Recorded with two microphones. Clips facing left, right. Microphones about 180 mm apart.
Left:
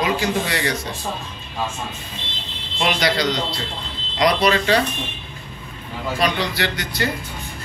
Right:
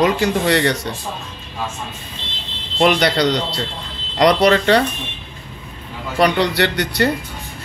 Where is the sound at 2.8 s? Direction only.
60° right (ahead or behind).